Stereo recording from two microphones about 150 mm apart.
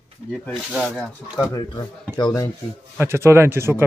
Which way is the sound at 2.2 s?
25° left (ahead or behind).